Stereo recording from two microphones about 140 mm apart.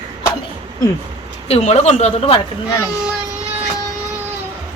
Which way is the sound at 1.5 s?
45° left (ahead or behind).